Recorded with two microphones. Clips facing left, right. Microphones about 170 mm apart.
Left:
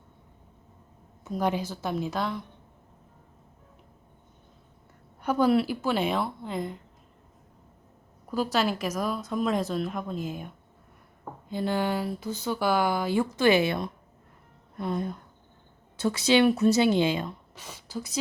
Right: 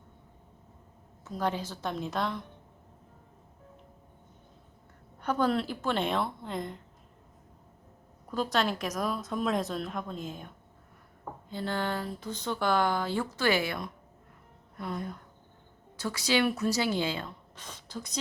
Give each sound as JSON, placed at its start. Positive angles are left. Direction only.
{"t": 1.2, "sound": "speech", "side_deg": 15}
{"t": 5.2, "sound": "a woman's voice", "side_deg": 10}
{"t": 8.3, "sound": "a woman's voice", "side_deg": 5}